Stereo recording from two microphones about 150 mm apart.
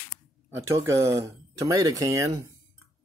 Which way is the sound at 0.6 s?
20° right (ahead or behind).